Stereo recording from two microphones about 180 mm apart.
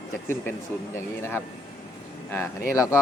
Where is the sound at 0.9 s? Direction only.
15° left (ahead or behind).